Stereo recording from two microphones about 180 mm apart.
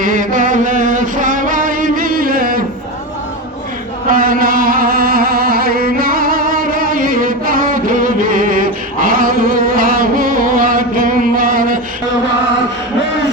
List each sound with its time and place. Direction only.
0.0 s music: 50° right (ahead or behind)
4.1 s music: 50° right (ahead or behind)